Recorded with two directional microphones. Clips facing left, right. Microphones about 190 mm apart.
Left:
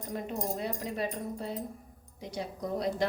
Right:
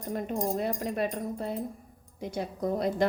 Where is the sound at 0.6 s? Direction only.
55° right (ahead or behind).